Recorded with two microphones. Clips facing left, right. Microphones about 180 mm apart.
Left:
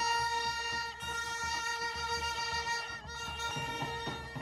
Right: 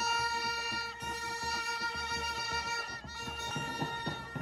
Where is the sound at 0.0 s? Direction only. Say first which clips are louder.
Left 1 dB; centre (ahead or behind).